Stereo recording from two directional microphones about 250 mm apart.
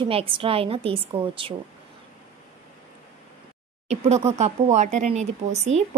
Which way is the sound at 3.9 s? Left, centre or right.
Right.